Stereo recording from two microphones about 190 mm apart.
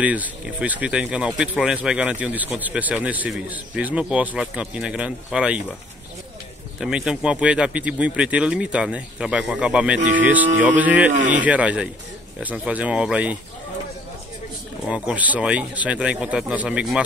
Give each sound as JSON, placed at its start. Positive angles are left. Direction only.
{"t": 0.0, "sound": "speech", "side_deg": -5}
{"t": 6.8, "sound": "speech", "side_deg": -5}
{"t": 9.9, "sound": "speech", "side_deg": -40}
{"t": 10.2, "sound": "speech", "side_deg": -10}
{"t": 14.9, "sound": "speech", "side_deg": -5}